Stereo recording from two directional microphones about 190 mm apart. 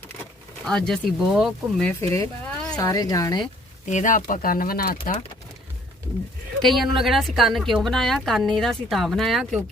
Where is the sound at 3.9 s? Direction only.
40° left (ahead or behind).